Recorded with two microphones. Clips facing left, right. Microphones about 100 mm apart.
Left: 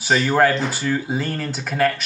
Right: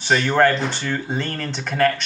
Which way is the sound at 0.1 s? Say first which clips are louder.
Even; centre (ahead or behind).